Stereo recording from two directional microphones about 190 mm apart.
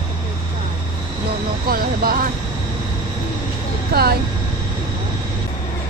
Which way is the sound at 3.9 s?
55° right (ahead or behind).